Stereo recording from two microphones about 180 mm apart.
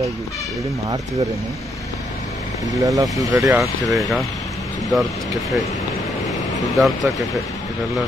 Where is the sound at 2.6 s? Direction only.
20° right (ahead or behind).